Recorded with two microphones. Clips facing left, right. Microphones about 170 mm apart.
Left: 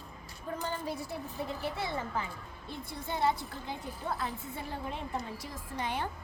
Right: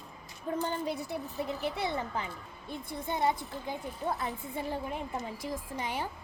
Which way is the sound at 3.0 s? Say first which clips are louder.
Right 1 dB; 15° right (ahead or behind).